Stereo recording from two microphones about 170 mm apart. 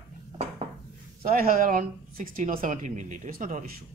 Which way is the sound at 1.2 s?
55° right (ahead or behind).